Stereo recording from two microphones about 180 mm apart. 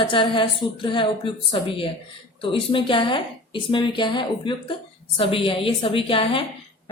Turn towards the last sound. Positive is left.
turn(degrees=30)  # may be behind; listen again after turning